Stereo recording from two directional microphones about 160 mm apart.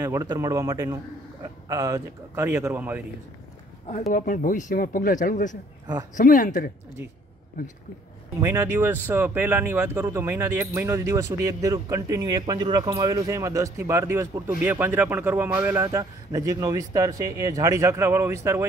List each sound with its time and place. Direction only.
0.0 s a man's voice: 20° right (ahead or behind)
4.1 s speech: 55° left (ahead or behind)
8.4 s speech: 15° right (ahead or behind)